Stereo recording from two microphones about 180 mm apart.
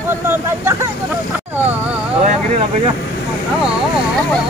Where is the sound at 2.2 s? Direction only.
35° right (ahead or behind).